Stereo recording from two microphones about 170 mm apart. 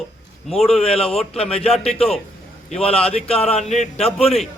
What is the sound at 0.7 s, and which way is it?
A man's voice, 35° left (ahead or behind).